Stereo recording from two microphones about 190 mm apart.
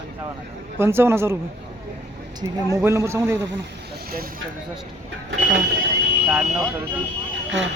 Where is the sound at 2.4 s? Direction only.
20° right (ahead or behind).